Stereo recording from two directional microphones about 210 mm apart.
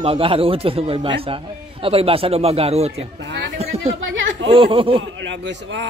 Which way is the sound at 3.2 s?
55° right (ahead or behind).